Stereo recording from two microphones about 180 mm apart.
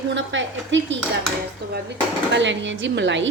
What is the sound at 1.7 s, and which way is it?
Speech, 75° right (ahead or behind).